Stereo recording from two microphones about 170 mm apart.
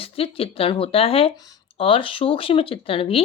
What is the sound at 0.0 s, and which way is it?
Speech, 35° left (ahead or behind).